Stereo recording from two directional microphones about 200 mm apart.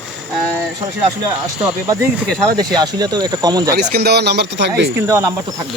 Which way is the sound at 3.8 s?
55° right (ahead or behind).